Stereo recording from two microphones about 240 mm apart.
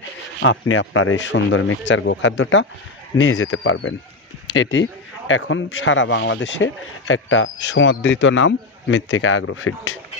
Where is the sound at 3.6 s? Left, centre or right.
Left.